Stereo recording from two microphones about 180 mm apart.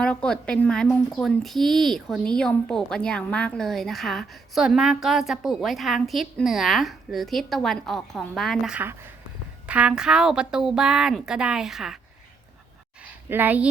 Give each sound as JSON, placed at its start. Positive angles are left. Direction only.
{"t": 0.0, "sound": "speech", "side_deg": 5}
{"t": 13.2, "sound": "speech", "side_deg": -10}